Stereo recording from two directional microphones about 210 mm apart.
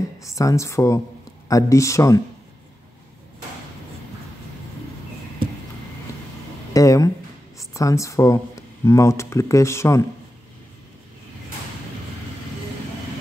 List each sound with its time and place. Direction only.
0.2 s speech: 15° left (ahead or behind)
6.7 s a sound: 15° left (ahead or behind)
7.5 s speech: 15° left (ahead or behind)